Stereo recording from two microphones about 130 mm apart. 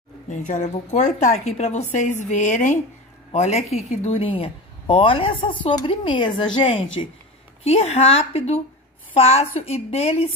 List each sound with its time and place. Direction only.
0.3 s a woman's voice: 70° left (ahead or behind); by 7.1 s 45° left (ahead or behind)
7.6 s speech: 55° left (ahead or behind)